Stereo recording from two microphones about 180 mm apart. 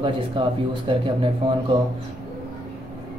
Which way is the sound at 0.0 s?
25° right (ahead or behind).